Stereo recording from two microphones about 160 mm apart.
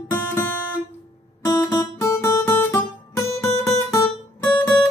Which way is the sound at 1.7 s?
15° left (ahead or behind).